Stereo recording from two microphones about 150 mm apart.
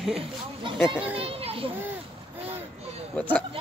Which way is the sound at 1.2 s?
40° right (ahead or behind).